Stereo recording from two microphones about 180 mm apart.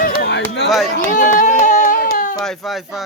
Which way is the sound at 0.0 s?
55° left (ahead or behind).